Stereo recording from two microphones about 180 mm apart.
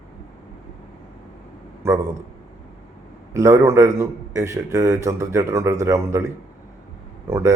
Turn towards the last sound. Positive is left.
turn(degrees=-15)  # may be behind; listen again after turning